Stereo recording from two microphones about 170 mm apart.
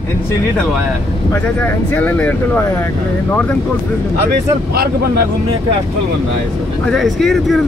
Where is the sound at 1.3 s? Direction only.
10° left (ahead or behind).